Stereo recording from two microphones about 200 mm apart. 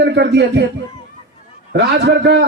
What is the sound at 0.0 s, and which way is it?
Speech, 60° right (ahead or behind).